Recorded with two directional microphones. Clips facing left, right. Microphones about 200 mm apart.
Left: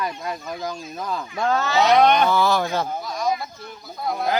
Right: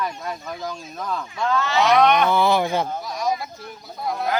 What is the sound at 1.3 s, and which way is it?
Speech, 40° left (ahead or behind).